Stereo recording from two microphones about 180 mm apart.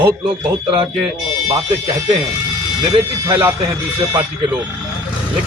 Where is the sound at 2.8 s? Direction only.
15° right (ahead or behind).